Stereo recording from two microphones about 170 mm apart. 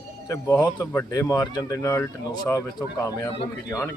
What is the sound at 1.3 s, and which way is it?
Speech, 20° left (ahead or behind).